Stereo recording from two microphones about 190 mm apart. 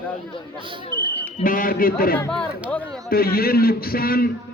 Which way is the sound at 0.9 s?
60° left (ahead or behind).